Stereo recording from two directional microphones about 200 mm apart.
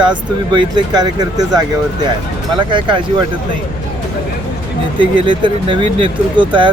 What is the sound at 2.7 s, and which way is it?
Speech, 25° right (ahead or behind).